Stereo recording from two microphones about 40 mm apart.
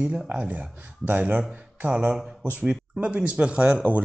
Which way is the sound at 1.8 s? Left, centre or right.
Right.